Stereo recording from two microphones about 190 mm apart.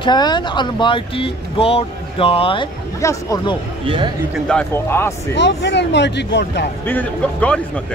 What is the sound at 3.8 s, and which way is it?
Speech, 25° right (ahead or behind).